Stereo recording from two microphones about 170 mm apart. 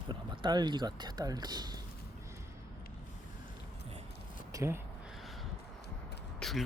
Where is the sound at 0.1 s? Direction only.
25° right (ahead or behind).